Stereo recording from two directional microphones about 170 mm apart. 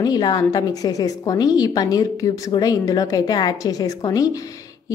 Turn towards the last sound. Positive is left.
turn(degrees=20)  # may be behind; listen again after turning